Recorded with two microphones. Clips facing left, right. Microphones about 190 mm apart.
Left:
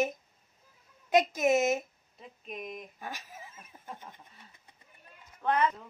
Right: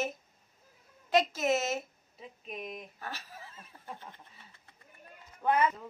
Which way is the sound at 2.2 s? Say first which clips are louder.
Even; centre (ahead or behind).